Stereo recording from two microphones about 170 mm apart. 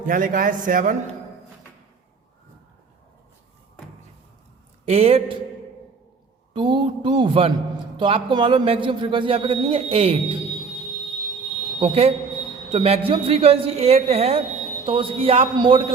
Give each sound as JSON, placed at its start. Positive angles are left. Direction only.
{"t": 0.0, "sound": "a man's voice", "side_deg": -55}
{"t": 4.9, "sound": "a man's voice", "side_deg": -35}
{"t": 6.5, "sound": "a man's voice", "side_deg": -30}
{"t": 11.8, "sound": "a man's voice", "side_deg": -35}